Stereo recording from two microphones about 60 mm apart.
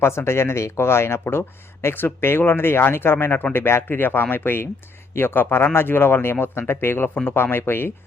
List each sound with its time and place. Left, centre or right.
0.0 s speech: left